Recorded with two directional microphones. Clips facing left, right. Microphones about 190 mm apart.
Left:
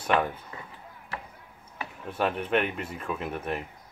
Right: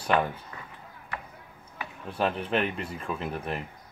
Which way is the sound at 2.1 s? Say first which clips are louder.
Left 1 dB; 5° left (ahead or behind).